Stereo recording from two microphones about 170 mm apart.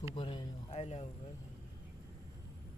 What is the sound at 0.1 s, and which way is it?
Speech, 30° left (ahead or behind).